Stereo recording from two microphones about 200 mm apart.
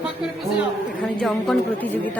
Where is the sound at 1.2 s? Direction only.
5° left (ahead or behind).